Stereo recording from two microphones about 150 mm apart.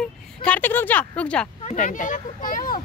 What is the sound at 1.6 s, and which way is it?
Speech, 55° left (ahead or behind).